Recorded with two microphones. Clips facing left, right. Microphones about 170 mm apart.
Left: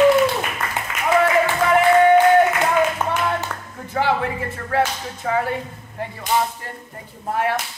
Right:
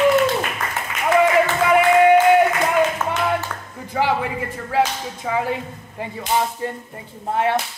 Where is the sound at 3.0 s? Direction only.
15° left (ahead or behind).